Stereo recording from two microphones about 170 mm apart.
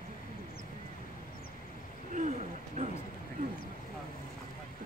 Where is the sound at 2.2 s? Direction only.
40° right (ahead or behind).